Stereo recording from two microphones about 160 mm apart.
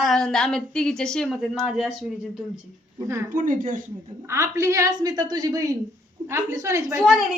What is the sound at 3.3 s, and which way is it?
Speech, 55° right (ahead or behind).